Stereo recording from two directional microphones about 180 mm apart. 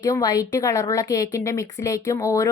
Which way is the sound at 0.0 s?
20° left (ahead or behind).